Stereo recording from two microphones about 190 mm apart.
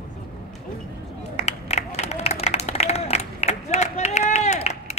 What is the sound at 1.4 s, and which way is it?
Clapping, 35° left (ahead or behind).